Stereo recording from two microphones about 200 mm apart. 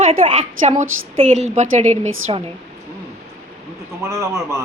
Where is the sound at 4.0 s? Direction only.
15° right (ahead or behind).